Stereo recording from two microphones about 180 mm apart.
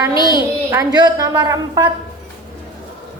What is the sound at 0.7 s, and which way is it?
A woman's voice, 20° right (ahead or behind).